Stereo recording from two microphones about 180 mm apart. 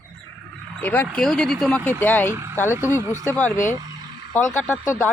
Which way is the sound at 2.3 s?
15° right (ahead or behind).